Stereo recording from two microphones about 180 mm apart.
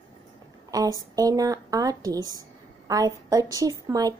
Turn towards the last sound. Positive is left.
turn(degrees=-20)  # may be behind; listen again after turning